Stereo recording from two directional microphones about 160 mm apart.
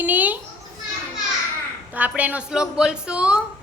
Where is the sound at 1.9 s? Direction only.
10° right (ahead or behind).